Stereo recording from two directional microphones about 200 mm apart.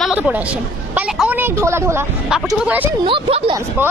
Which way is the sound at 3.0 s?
25° right (ahead or behind).